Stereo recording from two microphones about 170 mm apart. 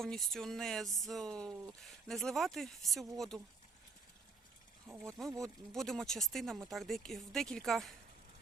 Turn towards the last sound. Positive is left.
turn(degrees=0)  # may be behind; listen again after turning